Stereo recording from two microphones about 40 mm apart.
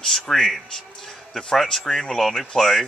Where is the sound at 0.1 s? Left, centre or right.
Centre.